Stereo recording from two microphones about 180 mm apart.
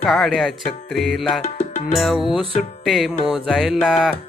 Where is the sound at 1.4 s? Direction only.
40° left (ahead or behind).